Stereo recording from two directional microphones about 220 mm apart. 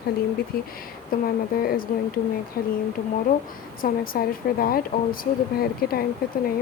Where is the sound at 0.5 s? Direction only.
45° left (ahead or behind).